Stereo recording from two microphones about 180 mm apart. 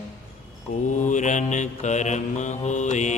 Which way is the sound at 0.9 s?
45° left (ahead or behind).